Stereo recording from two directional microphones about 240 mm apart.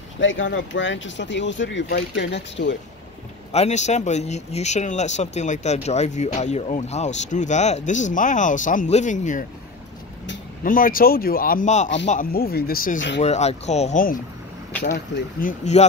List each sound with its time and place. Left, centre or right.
0.2 s speech: left
3.5 s speech: left
10.6 s speech: left